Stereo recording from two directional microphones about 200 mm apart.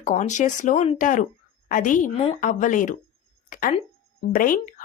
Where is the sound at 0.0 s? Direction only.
35° left (ahead or behind).